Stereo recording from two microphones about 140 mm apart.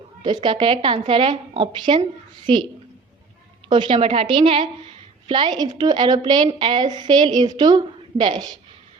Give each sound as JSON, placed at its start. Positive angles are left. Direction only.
{"t": 0.2, "sound": "a woman's voice", "side_deg": -35}
{"t": 3.7, "sound": "a woman's voice", "side_deg": -35}